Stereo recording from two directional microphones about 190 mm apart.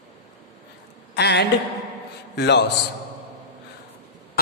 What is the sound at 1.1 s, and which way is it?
A man's voice, 60° left (ahead or behind).